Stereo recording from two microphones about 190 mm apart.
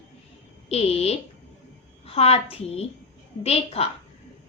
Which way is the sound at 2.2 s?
30° left (ahead or behind).